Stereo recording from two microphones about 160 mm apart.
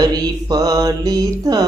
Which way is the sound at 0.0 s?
25° right (ahead or behind).